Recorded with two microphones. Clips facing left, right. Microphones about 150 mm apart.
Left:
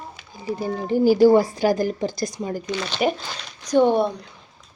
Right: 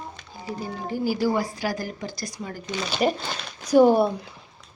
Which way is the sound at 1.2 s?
25° left (ahead or behind).